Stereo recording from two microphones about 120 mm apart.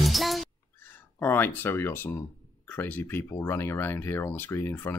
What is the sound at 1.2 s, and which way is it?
Speech, 15° left (ahead or behind).